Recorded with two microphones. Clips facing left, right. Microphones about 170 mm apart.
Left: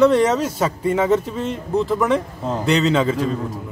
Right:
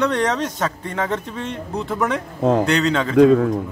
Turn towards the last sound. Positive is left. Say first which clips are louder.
# right 11 dB
turn(degrees=-70)  # may be behind; listen again after turning